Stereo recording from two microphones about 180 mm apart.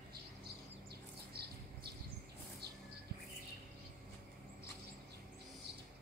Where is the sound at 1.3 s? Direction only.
60° right (ahead or behind).